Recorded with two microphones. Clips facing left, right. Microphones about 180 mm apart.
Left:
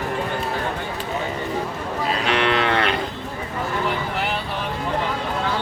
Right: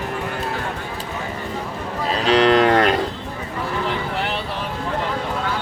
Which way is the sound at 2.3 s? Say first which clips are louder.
Right 8 dB; 35° right (ahead or behind).